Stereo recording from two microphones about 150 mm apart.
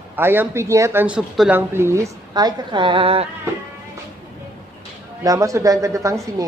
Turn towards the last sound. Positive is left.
turn(degrees=-20)  # may be behind; listen again after turning